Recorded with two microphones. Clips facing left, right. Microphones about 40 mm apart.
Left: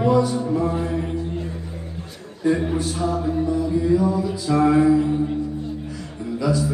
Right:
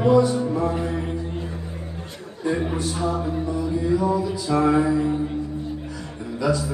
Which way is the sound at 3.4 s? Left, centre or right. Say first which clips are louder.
Left 3 dB; centre.